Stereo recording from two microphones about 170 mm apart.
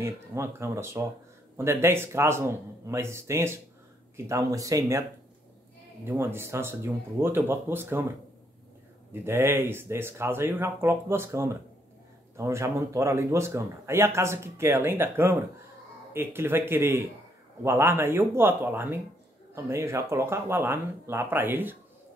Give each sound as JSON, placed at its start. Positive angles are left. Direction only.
{"t": 0.0, "sound": "speech", "side_deg": -15}
{"t": 6.0, "sound": "speech", "side_deg": -15}
{"t": 9.1, "sound": "speech", "side_deg": -15}